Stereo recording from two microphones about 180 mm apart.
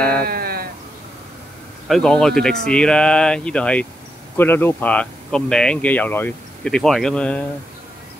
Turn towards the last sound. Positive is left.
turn(degrees=5)  # may be behind; listen again after turning